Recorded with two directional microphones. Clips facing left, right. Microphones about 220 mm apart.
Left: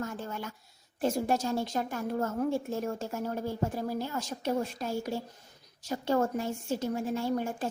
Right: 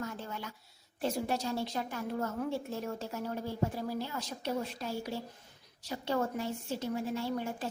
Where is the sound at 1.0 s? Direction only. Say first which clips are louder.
Left 4 dB; 45° left (ahead or behind).